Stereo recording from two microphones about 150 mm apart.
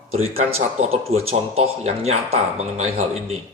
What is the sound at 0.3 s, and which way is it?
Speech, 45° right (ahead or behind).